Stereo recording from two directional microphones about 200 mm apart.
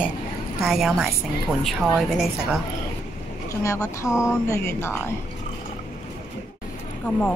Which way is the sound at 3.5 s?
15° left (ahead or behind).